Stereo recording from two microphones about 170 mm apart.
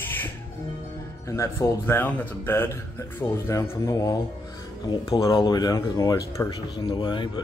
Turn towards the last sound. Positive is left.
turn(degrees=30)  # may be behind; listen again after turning